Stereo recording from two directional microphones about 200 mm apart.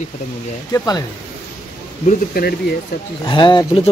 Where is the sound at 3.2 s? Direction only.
20° left (ahead or behind).